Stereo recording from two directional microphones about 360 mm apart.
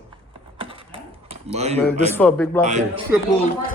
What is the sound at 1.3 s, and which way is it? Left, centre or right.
Speech, centre.